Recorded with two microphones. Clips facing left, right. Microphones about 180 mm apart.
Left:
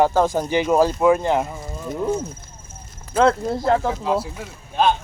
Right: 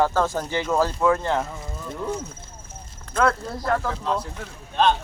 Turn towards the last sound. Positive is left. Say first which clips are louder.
# left 1 dB
turn(degrees=10)  # may be behind; listen again after turning